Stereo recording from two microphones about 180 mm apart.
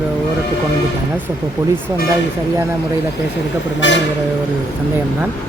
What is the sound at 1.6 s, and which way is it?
Speech, 15° right (ahead or behind).